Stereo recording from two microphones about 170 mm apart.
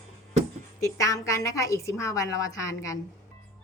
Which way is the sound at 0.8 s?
20° left (ahead or behind).